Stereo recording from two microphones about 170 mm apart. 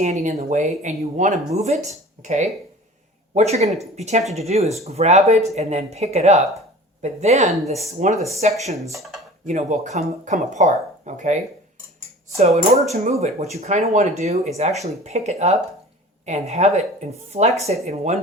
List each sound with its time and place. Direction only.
0.0 s speech: 45° right (ahead or behind)
9.5 s speech: 45° right (ahead or behind)
12.4 s speech: 40° right (ahead or behind)